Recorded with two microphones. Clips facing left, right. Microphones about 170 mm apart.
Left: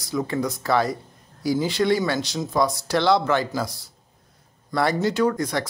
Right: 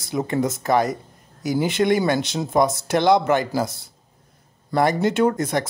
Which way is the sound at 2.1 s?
20° right (ahead or behind).